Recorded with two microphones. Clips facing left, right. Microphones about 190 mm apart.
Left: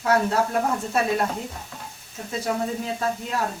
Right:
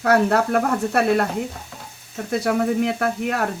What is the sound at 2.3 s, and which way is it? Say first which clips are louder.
Speech: right 6 dB; 70° right (ahead or behind).